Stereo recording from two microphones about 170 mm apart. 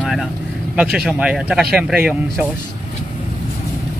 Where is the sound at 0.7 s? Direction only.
5° right (ahead or behind).